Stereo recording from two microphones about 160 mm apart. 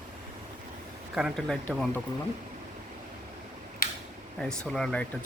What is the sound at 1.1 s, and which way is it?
Speech, centre (ahead or behind).